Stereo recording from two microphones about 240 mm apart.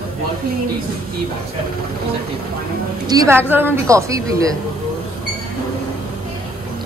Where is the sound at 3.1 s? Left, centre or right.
Centre.